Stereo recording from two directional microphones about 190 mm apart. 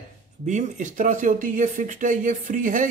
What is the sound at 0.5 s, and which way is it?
Speech, 40° right (ahead or behind).